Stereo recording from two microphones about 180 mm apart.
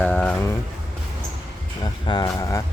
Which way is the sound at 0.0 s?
10° left (ahead or behind).